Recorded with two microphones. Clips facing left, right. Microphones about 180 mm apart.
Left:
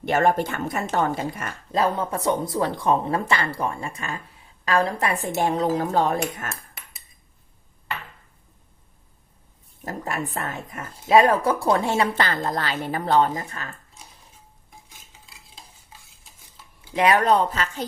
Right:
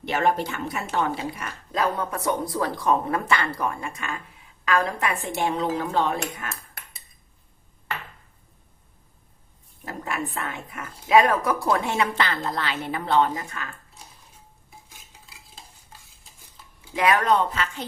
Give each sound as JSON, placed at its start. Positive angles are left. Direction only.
{"t": 0.0, "sound": "speech", "side_deg": 45}
{"t": 1.7, "sound": "speech", "side_deg": 30}
{"t": 9.8, "sound": "speech", "side_deg": 40}
{"t": 15.3, "sound": "stir", "side_deg": 0}
{"t": 16.9, "sound": "speech", "side_deg": 30}